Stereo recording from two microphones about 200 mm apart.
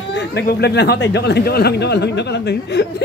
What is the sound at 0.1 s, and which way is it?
Speech, 60° left (ahead or behind).